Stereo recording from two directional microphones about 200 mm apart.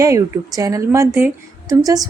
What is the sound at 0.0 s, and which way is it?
A woman's voice, 15° right (ahead or behind).